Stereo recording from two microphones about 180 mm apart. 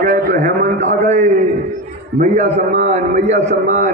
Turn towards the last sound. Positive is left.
turn(degrees=-45)  # may be behind; listen again after turning